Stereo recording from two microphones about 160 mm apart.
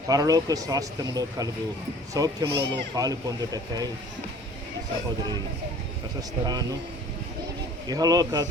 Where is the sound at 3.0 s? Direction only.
25° right (ahead or behind).